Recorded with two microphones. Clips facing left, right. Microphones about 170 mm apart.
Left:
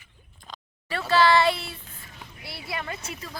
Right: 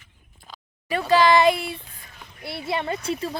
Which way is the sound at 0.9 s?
15° right (ahead or behind).